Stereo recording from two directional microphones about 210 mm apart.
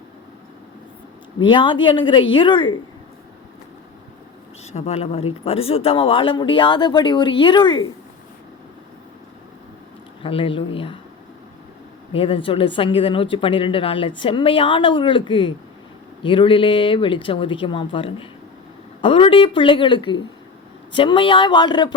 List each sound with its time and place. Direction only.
1.5 s speech: 20° left (ahead or behind)
4.7 s speech: 30° left (ahead or behind)
10.2 s speech: 25° left (ahead or behind)
12.1 s speech: 25° left (ahead or behind)